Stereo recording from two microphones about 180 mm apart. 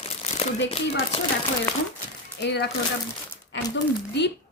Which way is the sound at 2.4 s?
70° left (ahead or behind).